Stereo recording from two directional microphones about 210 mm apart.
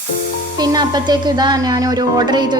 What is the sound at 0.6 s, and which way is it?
Speech, 20° right (ahead or behind).